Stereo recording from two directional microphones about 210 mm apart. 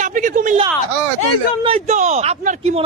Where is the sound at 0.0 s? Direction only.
40° right (ahead or behind).